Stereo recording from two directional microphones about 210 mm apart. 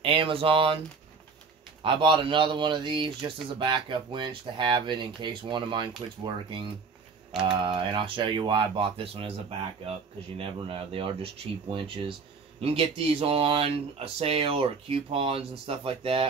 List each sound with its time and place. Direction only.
0.0 s speech: 25° right (ahead or behind)
1.8 s speech: 25° right (ahead or behind)
10.3 s speech: 25° right (ahead or behind)